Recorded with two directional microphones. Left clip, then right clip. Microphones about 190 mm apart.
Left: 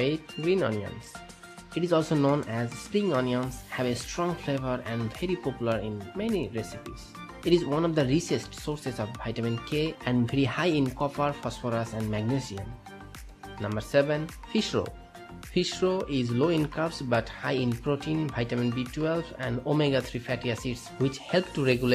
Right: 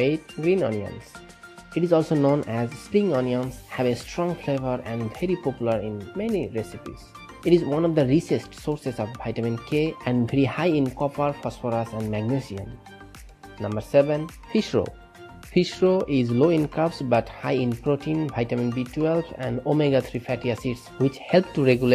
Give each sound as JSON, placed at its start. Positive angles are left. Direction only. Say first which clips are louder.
{"t": 0.0, "sound": "speech", "louder": "right 5 dB", "side_deg": -15}
{"t": 7.8, "sound": "speech", "louder": "right 5 dB", "side_deg": -15}
{"t": 13.7, "sound": "speech", "louder": "right 5 dB", "side_deg": -20}